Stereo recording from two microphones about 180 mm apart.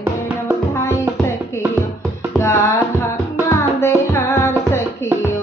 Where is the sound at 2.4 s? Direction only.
15° left (ahead or behind).